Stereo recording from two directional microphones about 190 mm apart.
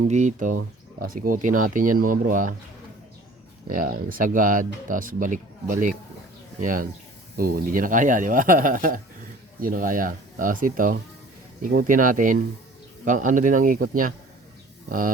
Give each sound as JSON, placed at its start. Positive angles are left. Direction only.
{"t": 0.0, "sound": "speech", "side_deg": -40}
{"t": 3.7, "sound": "speech", "side_deg": -45}